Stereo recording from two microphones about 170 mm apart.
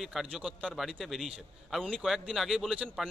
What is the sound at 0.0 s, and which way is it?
Speech, centre (ahead or behind).